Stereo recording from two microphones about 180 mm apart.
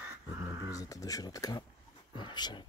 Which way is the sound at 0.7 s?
20° left (ahead or behind).